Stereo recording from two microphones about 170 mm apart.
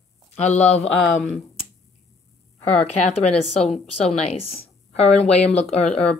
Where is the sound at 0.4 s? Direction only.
40° left (ahead or behind).